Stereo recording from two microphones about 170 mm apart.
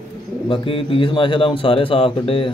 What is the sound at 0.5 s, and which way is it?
A man's voice, 30° left (ahead or behind).